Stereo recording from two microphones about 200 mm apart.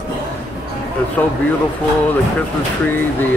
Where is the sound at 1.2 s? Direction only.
5° left (ahead or behind).